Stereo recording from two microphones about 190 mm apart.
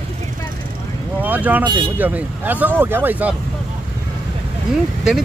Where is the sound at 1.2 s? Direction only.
10° right (ahead or behind).